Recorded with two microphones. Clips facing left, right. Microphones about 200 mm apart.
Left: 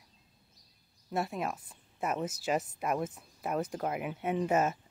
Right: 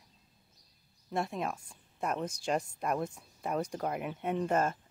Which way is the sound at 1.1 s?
Centre (ahead or behind).